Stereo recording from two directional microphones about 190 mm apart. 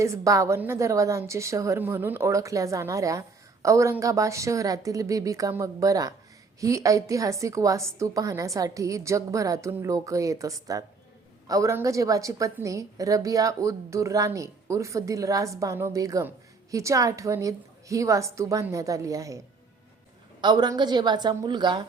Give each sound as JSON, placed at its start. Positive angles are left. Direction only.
{"t": 0.0, "sound": "a woman's voice", "side_deg": -15}
{"t": 20.4, "sound": "a woman's voice", "side_deg": -25}